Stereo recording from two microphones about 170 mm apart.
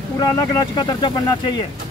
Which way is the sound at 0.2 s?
25° left (ahead or behind).